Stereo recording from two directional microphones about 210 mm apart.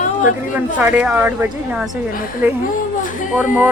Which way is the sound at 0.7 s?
5° right (ahead or behind).